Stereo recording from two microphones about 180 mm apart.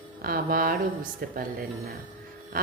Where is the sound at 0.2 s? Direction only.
55° right (ahead or behind).